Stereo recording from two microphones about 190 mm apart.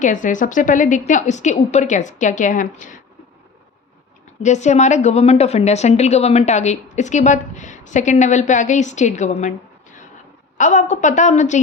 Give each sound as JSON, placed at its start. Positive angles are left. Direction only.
{"t": 0.0, "sound": "a woman's voice", "side_deg": 40}
{"t": 4.4, "sound": "a woman's voice", "side_deg": 40}
{"t": 10.6, "sound": "a woman's voice", "side_deg": 40}